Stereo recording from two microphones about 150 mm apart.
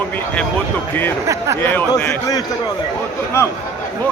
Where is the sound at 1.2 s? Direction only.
20° right (ahead or behind).